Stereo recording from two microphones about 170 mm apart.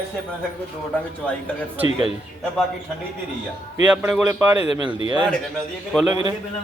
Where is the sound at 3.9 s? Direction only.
5° right (ahead or behind).